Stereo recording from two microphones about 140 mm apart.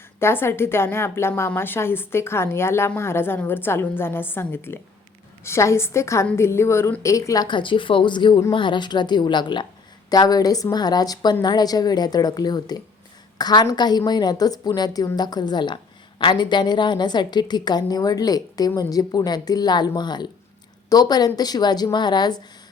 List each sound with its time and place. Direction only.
0.2 s a woman's voice: 15° left (ahead or behind)